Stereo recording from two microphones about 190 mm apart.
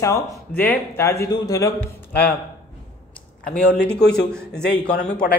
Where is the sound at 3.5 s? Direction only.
5° left (ahead or behind).